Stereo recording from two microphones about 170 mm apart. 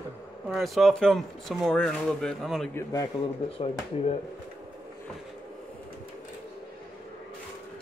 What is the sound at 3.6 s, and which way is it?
Speech, 35° left (ahead or behind).